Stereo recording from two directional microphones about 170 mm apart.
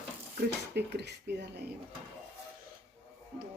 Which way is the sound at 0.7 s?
80° right.